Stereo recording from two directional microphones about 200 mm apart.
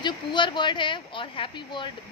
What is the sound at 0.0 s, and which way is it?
Speech, 25° left (ahead or behind).